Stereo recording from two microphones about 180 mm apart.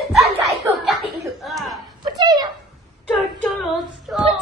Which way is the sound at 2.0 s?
20° right (ahead or behind).